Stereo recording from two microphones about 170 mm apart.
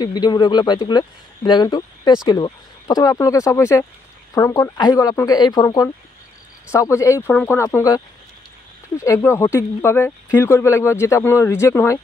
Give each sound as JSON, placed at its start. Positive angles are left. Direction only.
{"t": 0.0, "sound": "speech", "side_deg": 25}